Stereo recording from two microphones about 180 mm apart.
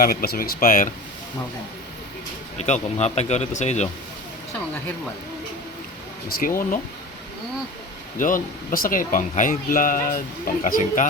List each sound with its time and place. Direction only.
0.0 s speech: 55° left (ahead or behind)
2.6 s speech: 40° left (ahead or behind)
6.4 s speech: 50° left (ahead or behind)
8.2 s speech: 50° left (ahead or behind)